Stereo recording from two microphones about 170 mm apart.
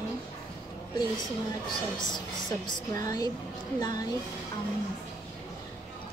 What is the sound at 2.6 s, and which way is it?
A woman's voice, 20° left (ahead or behind).